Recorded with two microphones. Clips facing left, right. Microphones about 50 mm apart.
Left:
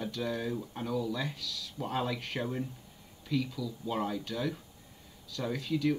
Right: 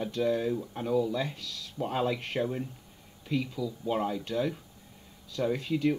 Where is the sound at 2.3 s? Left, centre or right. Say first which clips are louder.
Right 2 dB; centre.